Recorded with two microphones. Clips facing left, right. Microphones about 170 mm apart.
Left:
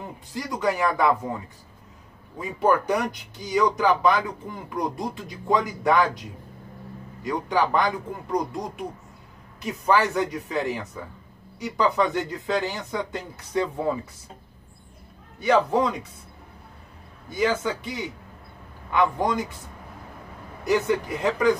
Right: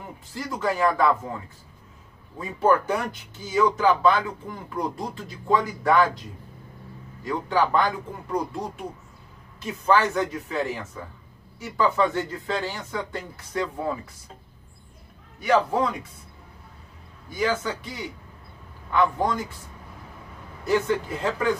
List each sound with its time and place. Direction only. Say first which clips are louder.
0.3 s speech: left 1 dB; 15° left (ahead or behind)
2.6 s speech: even; 15° left (ahead or behind)
7.2 s speech: even; 15° left (ahead or behind)
15.4 s a man's voice: left 1 dB; 20° left (ahead or behind)
17.3 s a man's voice: left 2 dB; 20° left (ahead or behind)
20.6 s speech: left 1 dB; 15° left (ahead or behind)